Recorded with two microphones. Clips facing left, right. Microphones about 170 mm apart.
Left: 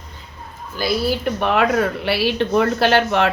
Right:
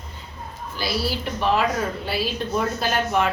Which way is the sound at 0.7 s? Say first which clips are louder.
Left 6 dB; 50° left (ahead or behind).